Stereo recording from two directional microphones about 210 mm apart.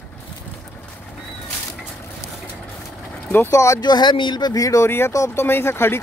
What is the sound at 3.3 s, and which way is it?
Speech, 10° left (ahead or behind).